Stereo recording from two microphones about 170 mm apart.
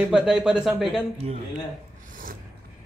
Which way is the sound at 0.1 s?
5° right (ahead or behind).